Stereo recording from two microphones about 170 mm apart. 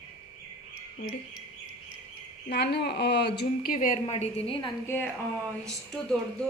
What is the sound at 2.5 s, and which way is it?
A woman's voice, 75° left (ahead or behind).